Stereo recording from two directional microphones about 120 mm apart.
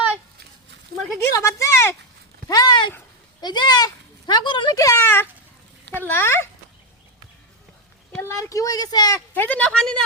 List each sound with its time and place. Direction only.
1.2 s speech: 25° left (ahead or behind)
2.5 s speech: 35° left (ahead or behind)
4.8 s speech: 25° left (ahead or behind)
8.2 s speech: 20° left (ahead or behind)
9.3 s speech: 15° left (ahead or behind)
9.7 s speech: 5° left (ahead or behind)